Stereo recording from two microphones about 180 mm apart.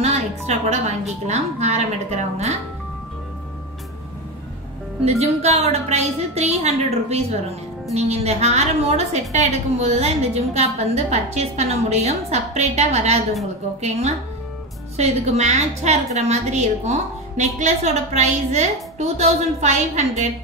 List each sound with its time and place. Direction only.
0.0 s a woman's voice: 35° right (ahead or behind)
5.2 s a woman's voice: 35° right (ahead or behind)